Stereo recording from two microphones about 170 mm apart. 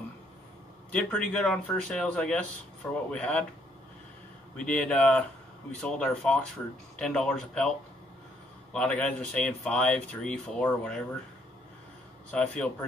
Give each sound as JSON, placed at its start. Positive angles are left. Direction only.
{"t": 0.9, "sound": "speech", "side_deg": 5}
{"t": 4.6, "sound": "speech", "side_deg": 5}
{"t": 8.7, "sound": "speech", "side_deg": 5}
{"t": 12.3, "sound": "speech", "side_deg": 10}